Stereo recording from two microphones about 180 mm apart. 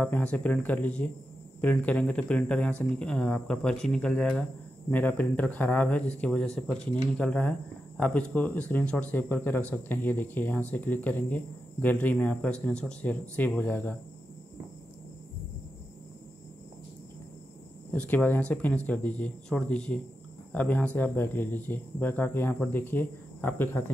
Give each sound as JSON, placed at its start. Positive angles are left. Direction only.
{"t": 0.0, "sound": "speech", "side_deg": 10}
{"t": 17.9, "sound": "speech", "side_deg": 10}